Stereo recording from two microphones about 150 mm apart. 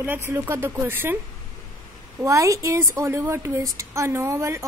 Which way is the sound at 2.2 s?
20° right (ahead or behind).